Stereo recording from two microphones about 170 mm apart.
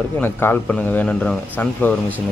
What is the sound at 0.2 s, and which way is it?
Speech, 10° left (ahead or behind).